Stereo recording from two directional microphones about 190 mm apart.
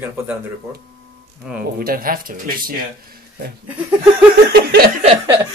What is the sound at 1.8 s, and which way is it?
Speech, 50° right (ahead or behind).